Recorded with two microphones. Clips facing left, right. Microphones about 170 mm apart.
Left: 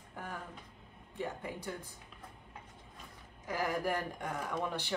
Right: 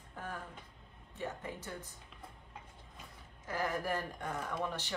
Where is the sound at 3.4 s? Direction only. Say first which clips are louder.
Left 2 dB; 15° left (ahead or behind).